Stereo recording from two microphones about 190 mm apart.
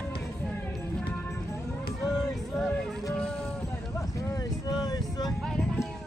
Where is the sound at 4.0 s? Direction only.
15° left (ahead or behind).